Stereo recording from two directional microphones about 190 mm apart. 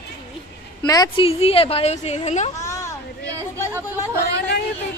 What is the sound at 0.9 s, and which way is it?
A woman's voice, 25° left (ahead or behind).